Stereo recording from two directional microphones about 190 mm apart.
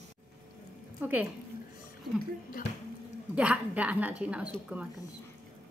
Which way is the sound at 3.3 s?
5° right (ahead or behind).